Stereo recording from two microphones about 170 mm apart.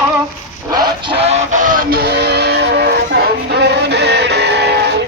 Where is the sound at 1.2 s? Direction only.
45° right (ahead or behind); by 4.9 s 80° right.